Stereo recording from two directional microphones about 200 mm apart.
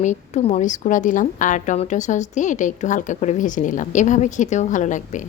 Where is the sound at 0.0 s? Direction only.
35° left (ahead or behind).